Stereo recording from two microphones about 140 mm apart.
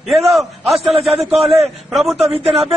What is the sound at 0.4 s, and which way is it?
A man's voice, centre (ahead or behind).